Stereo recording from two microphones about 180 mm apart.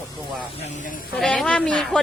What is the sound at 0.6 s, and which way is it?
Speech, 40° left (ahead or behind).